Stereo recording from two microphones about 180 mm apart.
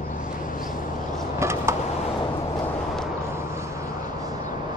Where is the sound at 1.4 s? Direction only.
15° right (ahead or behind).